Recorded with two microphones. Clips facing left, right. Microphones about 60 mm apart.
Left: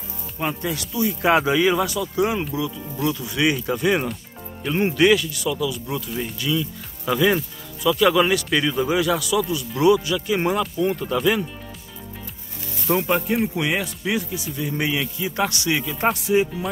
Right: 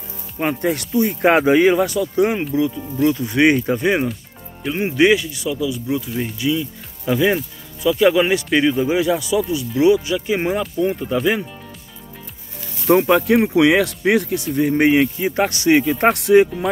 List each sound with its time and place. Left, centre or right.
0.4 s speech: right
3.7 s speech: right
4.6 s speech: centre
4.9 s speech: right
6.0 s speech: centre
6.3 s speech: centre
12.8 s speech: right